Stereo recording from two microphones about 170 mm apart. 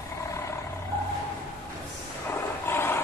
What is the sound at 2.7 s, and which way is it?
Roar, 15° left (ahead or behind).